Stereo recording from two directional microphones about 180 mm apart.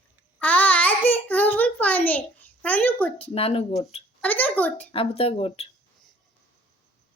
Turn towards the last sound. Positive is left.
turn(degrees=30)  # may be behind; listen again after turning